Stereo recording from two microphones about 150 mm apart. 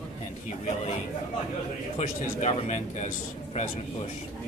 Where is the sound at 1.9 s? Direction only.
45° left (ahead or behind).